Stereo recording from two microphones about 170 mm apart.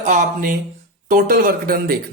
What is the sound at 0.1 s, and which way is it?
Speech, 50° right (ahead or behind).